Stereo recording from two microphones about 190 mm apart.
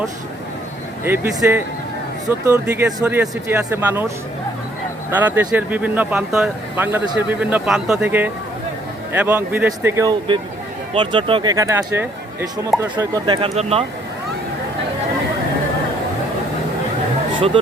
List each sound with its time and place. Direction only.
1.0 s speech: 10° right (ahead or behind)
5.1 s speech: 10° right (ahead or behind); by 11.5 s 25° right (ahead or behind)
11.5 s speech: 15° right (ahead or behind); by 13.8 s 35° right (ahead or behind)